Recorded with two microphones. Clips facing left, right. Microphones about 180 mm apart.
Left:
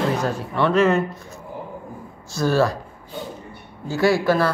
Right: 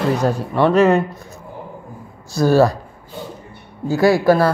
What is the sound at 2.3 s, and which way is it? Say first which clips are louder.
Speech: right 6 dB; 35° right (ahead or behind).